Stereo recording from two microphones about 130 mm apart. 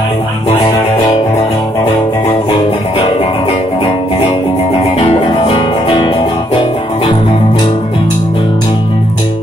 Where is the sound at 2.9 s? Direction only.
45° left (ahead or behind).